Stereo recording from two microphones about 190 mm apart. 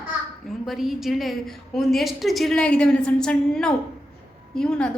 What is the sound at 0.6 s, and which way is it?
A woman's voice, centre (ahead or behind).